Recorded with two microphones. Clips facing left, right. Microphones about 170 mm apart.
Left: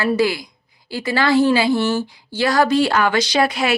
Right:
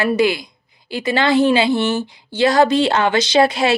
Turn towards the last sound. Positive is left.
turn(degrees=-25)  # may be behind; listen again after turning